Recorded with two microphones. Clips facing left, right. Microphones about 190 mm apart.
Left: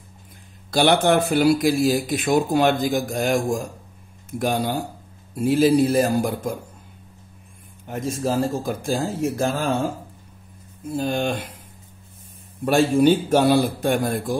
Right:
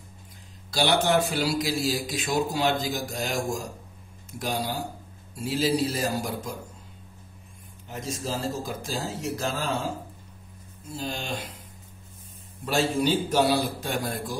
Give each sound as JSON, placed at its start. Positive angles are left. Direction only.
{"t": 0.7, "sound": "a man's voice", "side_deg": 55}
{"t": 7.8, "sound": "a man's voice", "side_deg": 55}
{"t": 10.9, "sound": "a man's voice", "side_deg": 55}
{"t": 12.6, "sound": "a man's voice", "side_deg": 55}